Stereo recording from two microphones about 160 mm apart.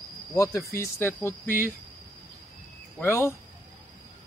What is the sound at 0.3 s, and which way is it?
Speech, 20° left (ahead or behind).